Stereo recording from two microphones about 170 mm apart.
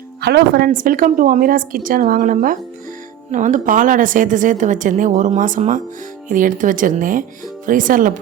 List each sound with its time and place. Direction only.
0.2 s a woman's voice: 70° right (ahead or behind); by 8.1 s 55° right (ahead or behind)